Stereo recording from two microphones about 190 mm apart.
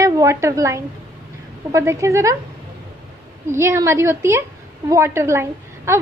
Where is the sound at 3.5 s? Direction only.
15° right (ahead or behind).